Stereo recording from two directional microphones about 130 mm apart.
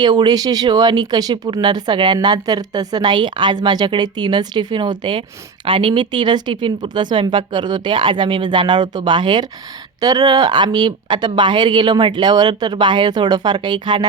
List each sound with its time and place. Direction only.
0.0 s speech: 35° right (ahead or behind)